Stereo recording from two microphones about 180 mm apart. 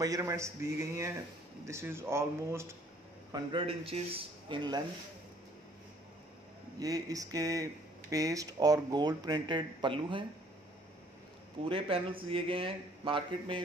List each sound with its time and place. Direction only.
0.0 s speech: 20° right (ahead or behind)
3.3 s speech: 25° right (ahead or behind)
6.8 s speech: 20° right (ahead or behind)
11.6 s a man's voice: 30° right (ahead or behind)